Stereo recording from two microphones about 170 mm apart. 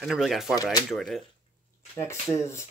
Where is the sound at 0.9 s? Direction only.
Centre (ahead or behind).